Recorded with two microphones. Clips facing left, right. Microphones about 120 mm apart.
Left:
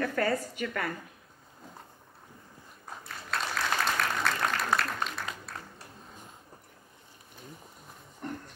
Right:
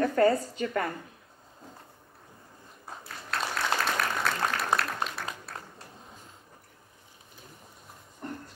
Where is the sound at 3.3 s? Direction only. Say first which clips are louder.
Right 1 dB; centre (ahead or behind).